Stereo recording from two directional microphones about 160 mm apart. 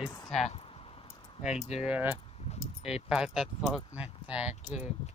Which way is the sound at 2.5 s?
40° left (ahead or behind).